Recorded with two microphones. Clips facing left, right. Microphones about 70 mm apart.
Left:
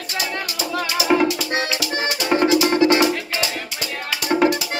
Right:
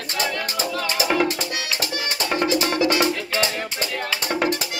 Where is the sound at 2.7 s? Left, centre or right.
Left.